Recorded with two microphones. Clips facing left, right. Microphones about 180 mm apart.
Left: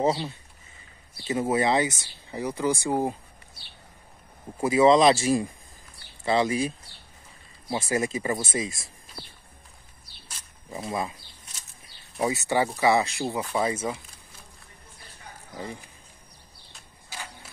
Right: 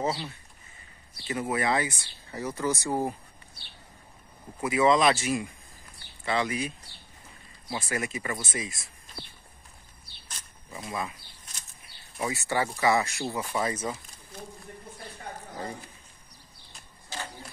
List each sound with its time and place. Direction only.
0.0 s speech: 25° left (ahead or behind)
4.6 s speech: 30° left (ahead or behind)
10.7 s speech: 25° left (ahead or behind)
12.2 s speech: 20° left (ahead or behind)
15.5 s speech: 20° left (ahead or behind)
17.1 s a sound: 10° left (ahead or behind)